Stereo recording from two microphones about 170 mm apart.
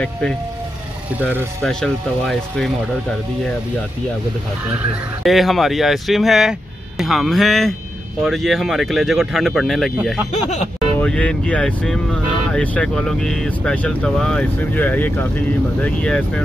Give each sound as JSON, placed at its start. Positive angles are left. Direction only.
{"t": 1.6, "sound": "speech", "side_deg": 5}
{"t": 4.6, "sound": "speech", "side_deg": -5}
{"t": 10.3, "sound": "music", "side_deg": 40}
{"t": 11.0, "sound": "speech", "side_deg": 5}